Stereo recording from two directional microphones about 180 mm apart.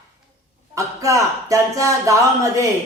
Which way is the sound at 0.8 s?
15° right (ahead or behind).